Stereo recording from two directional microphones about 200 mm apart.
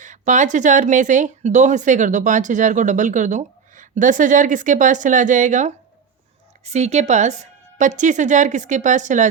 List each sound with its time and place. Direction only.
0.0 s speech: 40° right (ahead or behind)